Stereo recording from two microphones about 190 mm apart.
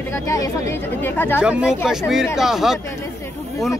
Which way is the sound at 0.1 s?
15° left (ahead or behind).